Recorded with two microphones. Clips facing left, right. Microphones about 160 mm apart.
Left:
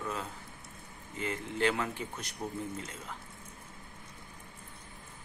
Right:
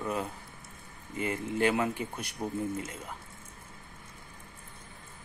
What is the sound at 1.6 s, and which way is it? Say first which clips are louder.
Speech: right 3 dB; 10° right (ahead or behind).